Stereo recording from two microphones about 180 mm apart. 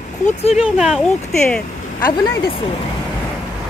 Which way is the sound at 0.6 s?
5° right (ahead or behind).